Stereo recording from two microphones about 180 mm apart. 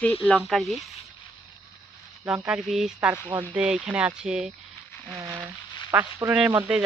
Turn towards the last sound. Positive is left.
turn(degrees=-5)  # may be behind; listen again after turning